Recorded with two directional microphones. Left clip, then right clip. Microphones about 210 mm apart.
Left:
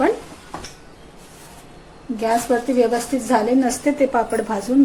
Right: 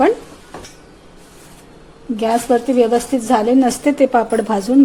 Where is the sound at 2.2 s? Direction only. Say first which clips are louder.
Right 3 dB; 45° right (ahead or behind).